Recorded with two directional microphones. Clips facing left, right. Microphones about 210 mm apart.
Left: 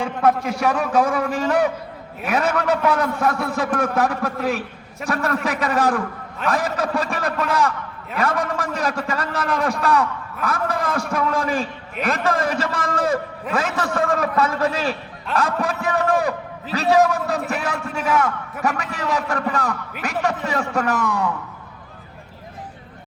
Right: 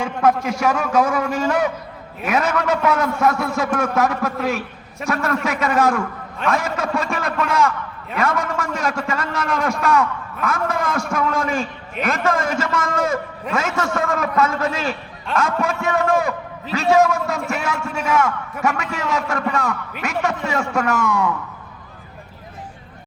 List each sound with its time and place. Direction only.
0.0 s a man's voice: 35° left (ahead or behind)